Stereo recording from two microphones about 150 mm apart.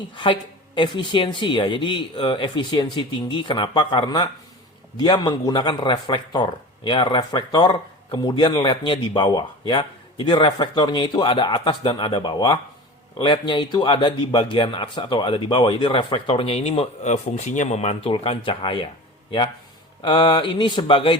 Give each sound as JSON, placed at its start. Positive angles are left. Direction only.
{"t": 0.1, "sound": "a man's voice", "side_deg": 35}
{"t": 20.0, "sound": "a man's voice", "side_deg": 30}